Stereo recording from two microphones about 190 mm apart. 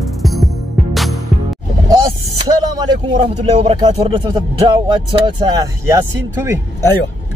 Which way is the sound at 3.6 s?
30° right (ahead or behind).